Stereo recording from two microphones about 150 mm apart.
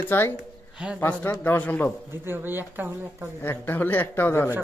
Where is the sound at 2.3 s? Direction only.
15° right (ahead or behind).